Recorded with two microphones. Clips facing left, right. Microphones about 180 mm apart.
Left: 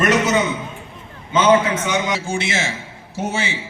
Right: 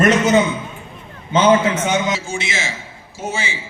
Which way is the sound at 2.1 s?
60° left (ahead or behind).